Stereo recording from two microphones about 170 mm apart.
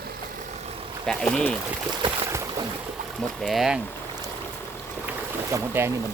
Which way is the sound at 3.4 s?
Centre (ahead or behind).